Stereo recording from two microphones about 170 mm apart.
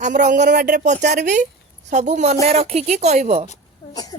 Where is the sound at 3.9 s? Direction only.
20° left (ahead or behind).